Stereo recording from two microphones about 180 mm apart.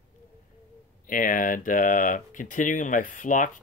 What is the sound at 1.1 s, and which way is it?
Speech, 50° left (ahead or behind).